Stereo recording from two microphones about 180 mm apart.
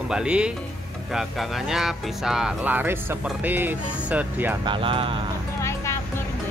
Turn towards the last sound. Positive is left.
turn(degrees=15)  # may be behind; listen again after turning